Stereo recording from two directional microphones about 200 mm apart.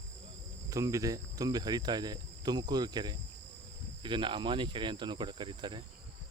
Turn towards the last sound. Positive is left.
turn(degrees=-25)  # may be behind; listen again after turning